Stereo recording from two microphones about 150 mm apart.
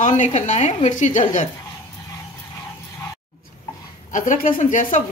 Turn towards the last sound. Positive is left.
turn(degrees=60)  # may be behind; listen again after turning